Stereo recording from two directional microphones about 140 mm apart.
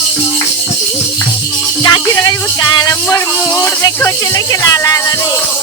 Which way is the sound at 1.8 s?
30° left (ahead or behind).